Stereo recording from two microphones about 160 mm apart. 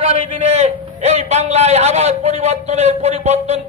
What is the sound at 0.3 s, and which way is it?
A man's voice, 45° right (ahead or behind).